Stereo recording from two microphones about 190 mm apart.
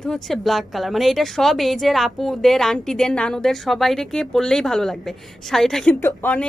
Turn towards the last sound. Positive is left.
turn(degrees=10)  # may be behind; listen again after turning